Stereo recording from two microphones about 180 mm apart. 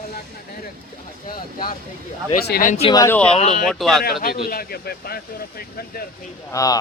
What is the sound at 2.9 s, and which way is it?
Speech, 20° left (ahead or behind).